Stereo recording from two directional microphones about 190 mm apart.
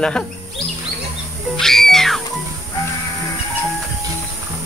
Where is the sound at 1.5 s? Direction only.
Centre (ahead or behind).